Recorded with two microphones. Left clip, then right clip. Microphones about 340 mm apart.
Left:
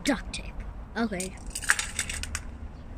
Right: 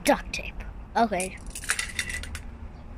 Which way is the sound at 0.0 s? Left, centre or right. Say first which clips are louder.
Right 6 dB; centre.